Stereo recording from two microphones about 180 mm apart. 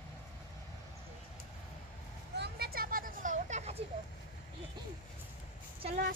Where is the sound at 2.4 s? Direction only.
60° right (ahead or behind); by 3.8 s 40° right (ahead or behind).